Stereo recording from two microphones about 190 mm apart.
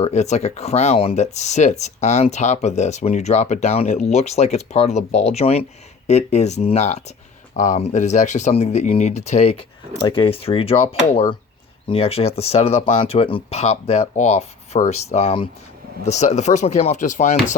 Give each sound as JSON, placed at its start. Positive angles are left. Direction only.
{"t": 0.0, "sound": "speech", "side_deg": 35}